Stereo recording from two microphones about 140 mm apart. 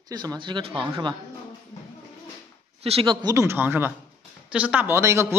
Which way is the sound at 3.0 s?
25° right (ahead or behind).